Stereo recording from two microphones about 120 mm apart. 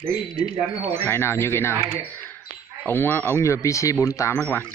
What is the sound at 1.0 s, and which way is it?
Speech, 20° left (ahead or behind).